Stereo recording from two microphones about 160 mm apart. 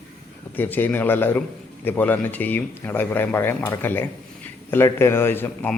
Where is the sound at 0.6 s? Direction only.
10° left (ahead or behind).